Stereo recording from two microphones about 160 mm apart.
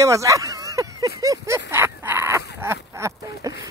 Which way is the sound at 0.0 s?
20° right (ahead or behind).